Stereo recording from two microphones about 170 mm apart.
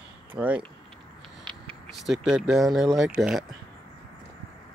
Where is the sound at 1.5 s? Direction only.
Centre (ahead or behind).